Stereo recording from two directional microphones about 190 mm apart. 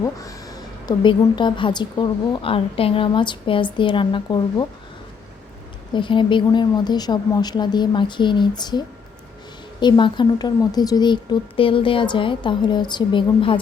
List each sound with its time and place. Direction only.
0.0 s a woman's voice: 15° left (ahead or behind)
5.9 s a woman's voice: 25° left (ahead or behind)
9.8 s a woman's voice: 25° left (ahead or behind)